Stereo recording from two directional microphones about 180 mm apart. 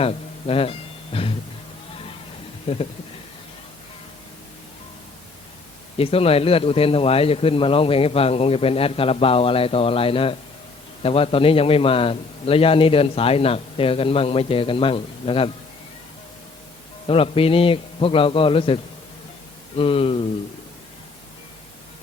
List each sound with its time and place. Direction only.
0.0 s music: 35° left (ahead or behind)
2.7 s a man's voice: 30° left (ahead or behind)
6.0 s a man's voice: 30° left (ahead or behind)
17.1 s a man's voice: 30° left (ahead or behind)